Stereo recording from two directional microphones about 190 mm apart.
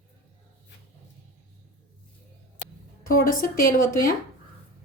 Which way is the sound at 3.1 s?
50° left (ahead or behind).